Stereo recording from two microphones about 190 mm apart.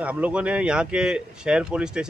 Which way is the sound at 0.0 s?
5° right (ahead or behind).